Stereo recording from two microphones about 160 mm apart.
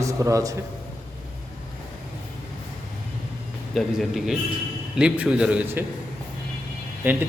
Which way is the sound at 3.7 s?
Centre (ahead or behind).